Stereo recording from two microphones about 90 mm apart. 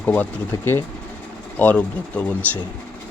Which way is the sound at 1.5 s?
15° left (ahead or behind).